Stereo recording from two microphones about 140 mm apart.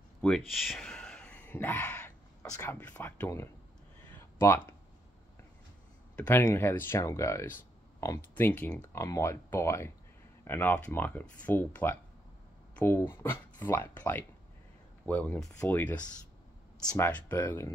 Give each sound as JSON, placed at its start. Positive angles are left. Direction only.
{"t": 0.2, "sound": "speech", "side_deg": 5}
{"t": 0.7, "sound": "a sound", "side_deg": 5}
{"t": 2.6, "sound": "speech", "side_deg": 10}
{"t": 6.1, "sound": "speech", "side_deg": 15}
{"t": 9.0, "sound": "speech", "side_deg": 20}